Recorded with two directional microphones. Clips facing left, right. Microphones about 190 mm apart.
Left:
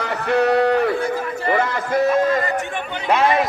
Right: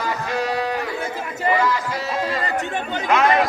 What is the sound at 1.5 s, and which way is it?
Run, 55° left (ahead or behind).